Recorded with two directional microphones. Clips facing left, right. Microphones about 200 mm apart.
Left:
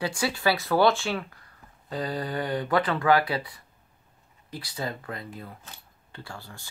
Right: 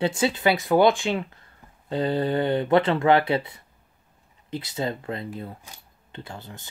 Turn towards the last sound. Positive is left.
turn(degrees=-20)  # may be behind; listen again after turning